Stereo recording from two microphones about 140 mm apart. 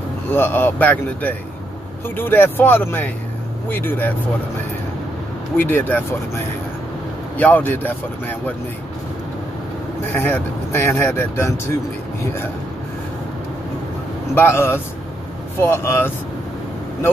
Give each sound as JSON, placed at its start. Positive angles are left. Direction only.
{"t": 0.3, "sound": "speech", "side_deg": 15}
{"t": 5.6, "sound": "speech", "side_deg": 15}
{"t": 10.1, "sound": "speech", "side_deg": 15}
{"t": 14.3, "sound": "speech", "side_deg": 15}